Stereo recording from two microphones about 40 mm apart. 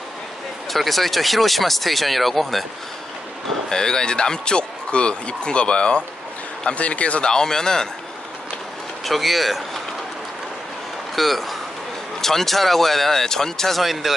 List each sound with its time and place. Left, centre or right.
0.7 s speech: centre
3.6 s speech: centre; by 7.2 s left
7.2 s speech: centre
9.0 s speech: centre
11.1 s speech: centre